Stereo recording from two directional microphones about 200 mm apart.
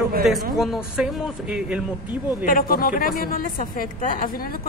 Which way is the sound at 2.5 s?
45° left (ahead or behind).